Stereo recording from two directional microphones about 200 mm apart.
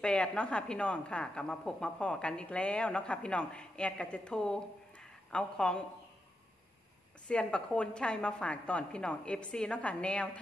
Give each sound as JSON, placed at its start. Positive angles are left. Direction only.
{"t": 0.0, "sound": "speech", "side_deg": 5}
{"t": 7.2, "sound": "speech", "side_deg": 5}